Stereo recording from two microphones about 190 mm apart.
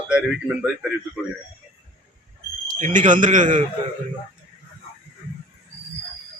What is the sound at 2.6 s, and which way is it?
A man's voice, 40° right (ahead or behind).